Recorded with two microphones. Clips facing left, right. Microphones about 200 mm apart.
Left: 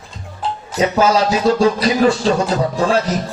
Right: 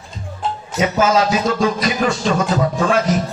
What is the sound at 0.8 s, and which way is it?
Music, 35° left (ahead or behind).